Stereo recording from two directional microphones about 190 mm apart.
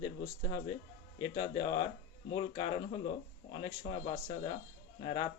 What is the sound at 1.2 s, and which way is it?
Speech, 25° left (ahead or behind).